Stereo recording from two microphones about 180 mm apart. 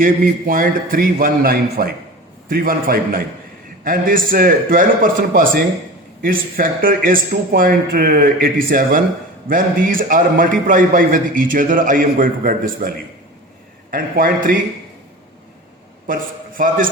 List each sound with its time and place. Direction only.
0.0 s a man's voice: 50° right (ahead or behind)
13.9 s a man's voice: 50° right (ahead or behind)
16.6 s a man's voice: 50° right (ahead or behind)